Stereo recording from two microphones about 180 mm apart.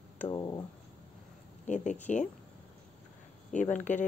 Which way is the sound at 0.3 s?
25° left (ahead or behind).